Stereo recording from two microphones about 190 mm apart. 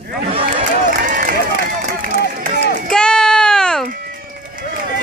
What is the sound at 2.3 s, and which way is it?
Run, 50° right (ahead or behind).